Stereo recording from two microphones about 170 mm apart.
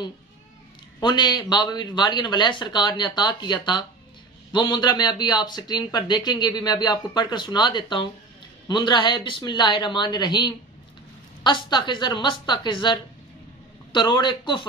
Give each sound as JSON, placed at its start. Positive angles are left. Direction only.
{"t": 1.0, "sound": "speech", "side_deg": 25}